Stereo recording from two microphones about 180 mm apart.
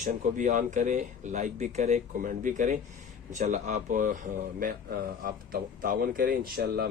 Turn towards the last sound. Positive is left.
turn(degrees=-55)  # may be behind; listen again after turning